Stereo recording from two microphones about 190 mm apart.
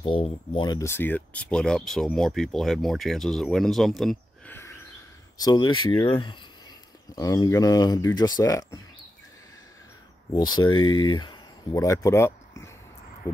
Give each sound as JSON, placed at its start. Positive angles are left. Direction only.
{"t": 0.0, "sound": "speech", "side_deg": 30}
{"t": 4.6, "sound": "a sound", "side_deg": 15}
{"t": 5.4, "sound": "speech", "side_deg": 20}
{"t": 10.3, "sound": "speech", "side_deg": 20}